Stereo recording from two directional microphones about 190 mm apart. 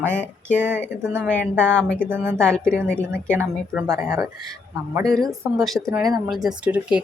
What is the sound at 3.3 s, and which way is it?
Speech, 10° right (ahead or behind).